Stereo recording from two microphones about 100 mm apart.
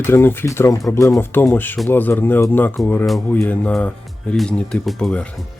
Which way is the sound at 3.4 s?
15° left (ahead or behind).